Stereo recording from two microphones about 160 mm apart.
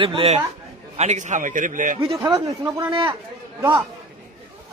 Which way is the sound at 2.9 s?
30° right (ahead or behind).